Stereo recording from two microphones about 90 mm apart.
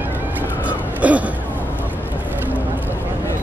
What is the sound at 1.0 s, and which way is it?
Speech, 15° right (ahead or behind).